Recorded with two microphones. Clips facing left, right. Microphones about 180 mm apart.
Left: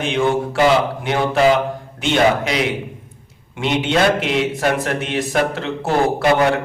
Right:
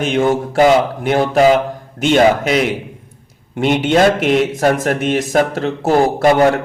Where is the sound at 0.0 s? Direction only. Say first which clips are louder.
Right 3 dB; 45° right (ahead or behind).